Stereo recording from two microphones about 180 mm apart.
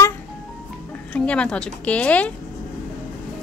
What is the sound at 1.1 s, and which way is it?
A woman's voice, 5° left (ahead or behind).